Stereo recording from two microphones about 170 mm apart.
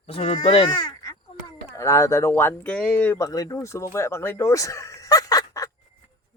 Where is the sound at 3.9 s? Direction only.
15° left (ahead or behind).